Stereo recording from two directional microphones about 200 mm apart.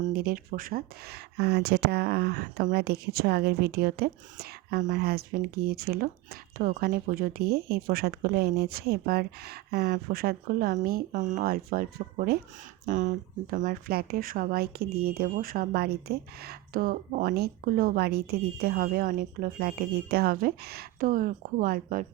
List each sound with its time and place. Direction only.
0.0 s speech: 50° right (ahead or behind)